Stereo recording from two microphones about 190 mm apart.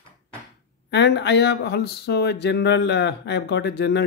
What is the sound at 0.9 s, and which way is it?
Speech, 65° left (ahead or behind).